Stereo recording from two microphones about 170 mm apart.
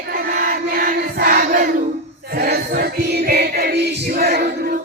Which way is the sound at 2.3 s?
65° right (ahead or behind).